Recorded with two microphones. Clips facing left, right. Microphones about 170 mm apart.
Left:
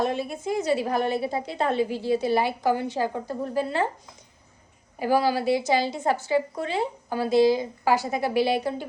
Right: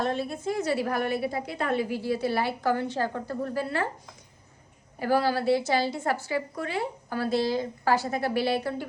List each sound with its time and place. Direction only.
0.0 s a woman's voice: 15° left (ahead or behind)
4.9 s a woman's voice: 15° left (ahead or behind)